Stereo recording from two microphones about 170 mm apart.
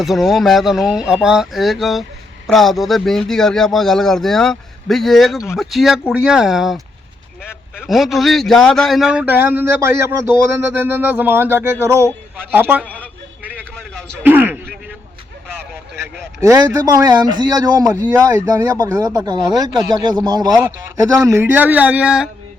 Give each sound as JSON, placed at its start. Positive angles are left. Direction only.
{"t": 0.0, "sound": "speech", "side_deg": 0}
{"t": 7.9, "sound": "speech", "side_deg": 0}
{"t": 13.0, "sound": "a sound", "side_deg": -10}
{"t": 14.3, "sound": "speech", "side_deg": -10}
{"t": 16.4, "sound": "speech", "side_deg": -15}
{"t": 20.5, "sound": "speech", "side_deg": -5}
{"t": 20.9, "sound": "speech", "side_deg": -20}